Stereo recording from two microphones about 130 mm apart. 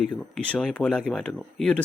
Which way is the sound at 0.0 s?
5° left (ahead or behind).